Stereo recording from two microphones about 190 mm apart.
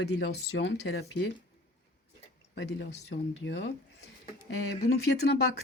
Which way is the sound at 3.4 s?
75° left (ahead or behind).